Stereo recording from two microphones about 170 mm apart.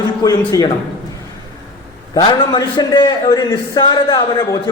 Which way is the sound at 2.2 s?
25° left (ahead or behind).